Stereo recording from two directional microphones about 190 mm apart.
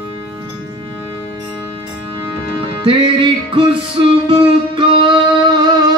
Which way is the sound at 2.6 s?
25° right (ahead or behind).